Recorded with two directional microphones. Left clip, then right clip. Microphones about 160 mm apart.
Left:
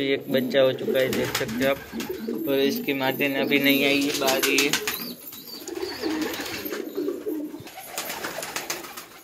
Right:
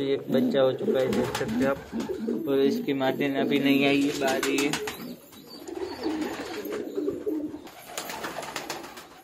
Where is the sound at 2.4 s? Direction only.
20° right (ahead or behind).